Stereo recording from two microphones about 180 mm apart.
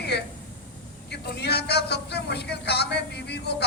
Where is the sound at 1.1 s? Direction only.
65° left (ahead or behind).